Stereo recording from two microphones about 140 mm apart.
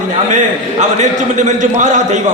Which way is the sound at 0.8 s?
60° right (ahead or behind).